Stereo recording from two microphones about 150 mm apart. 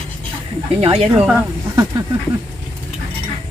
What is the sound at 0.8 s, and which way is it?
Speech, 40° right (ahead or behind).